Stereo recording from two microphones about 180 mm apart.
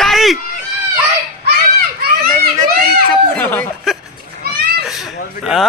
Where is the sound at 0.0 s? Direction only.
Centre (ahead or behind).